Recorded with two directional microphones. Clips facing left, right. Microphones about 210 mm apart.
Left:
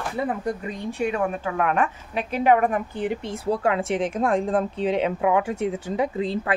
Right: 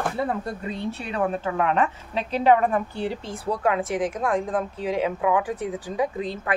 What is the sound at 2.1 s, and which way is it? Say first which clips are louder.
A woman's voice: even; 15° left (ahead or behind).